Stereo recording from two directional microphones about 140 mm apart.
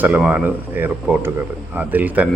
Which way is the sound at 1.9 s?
10° right (ahead or behind).